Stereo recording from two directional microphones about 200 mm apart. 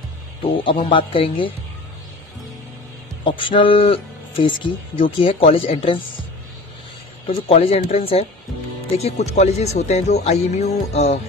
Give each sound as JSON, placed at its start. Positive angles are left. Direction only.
{"t": 0.4, "sound": "speech", "side_deg": 25}
{"t": 3.3, "sound": "speech", "side_deg": 25}
{"t": 7.2, "sound": "speech", "side_deg": 30}